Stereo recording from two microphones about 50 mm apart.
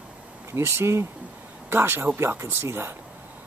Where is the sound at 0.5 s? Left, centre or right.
Right.